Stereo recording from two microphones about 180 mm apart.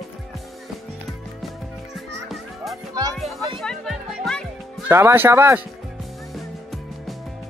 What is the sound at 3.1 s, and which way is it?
Music, centre (ahead or behind).